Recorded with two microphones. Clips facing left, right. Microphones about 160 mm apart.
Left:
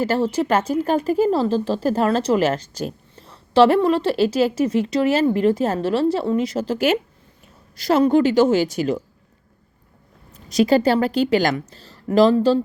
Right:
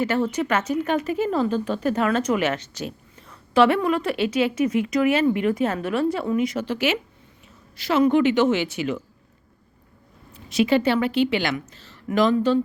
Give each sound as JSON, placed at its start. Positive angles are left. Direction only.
{"t": 0.0, "sound": "speech", "side_deg": 30}
{"t": 10.3, "sound": "speech", "side_deg": 40}